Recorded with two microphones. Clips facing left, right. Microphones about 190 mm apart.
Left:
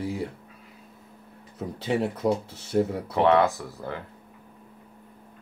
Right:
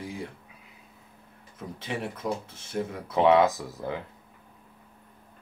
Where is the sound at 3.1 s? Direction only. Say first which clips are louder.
Even; 15° right (ahead or behind).